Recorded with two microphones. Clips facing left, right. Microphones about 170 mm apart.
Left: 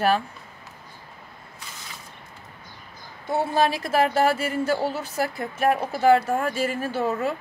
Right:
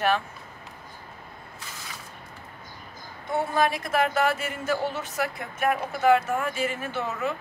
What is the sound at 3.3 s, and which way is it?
Speech, 30° left (ahead or behind).